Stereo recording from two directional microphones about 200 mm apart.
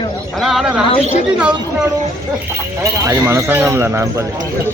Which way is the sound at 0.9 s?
35° left (ahead or behind).